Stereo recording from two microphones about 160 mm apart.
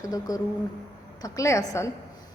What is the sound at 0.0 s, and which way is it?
Speech, 25° left (ahead or behind).